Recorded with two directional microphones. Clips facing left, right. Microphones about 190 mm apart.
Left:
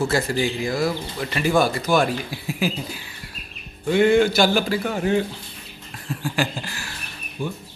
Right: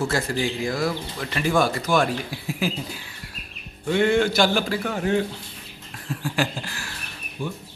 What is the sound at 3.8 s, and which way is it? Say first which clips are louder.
A man's voice: left 3 dB; 10° left (ahead or behind).